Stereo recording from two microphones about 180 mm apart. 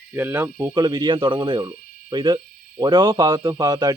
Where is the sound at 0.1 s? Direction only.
10° right (ahead or behind).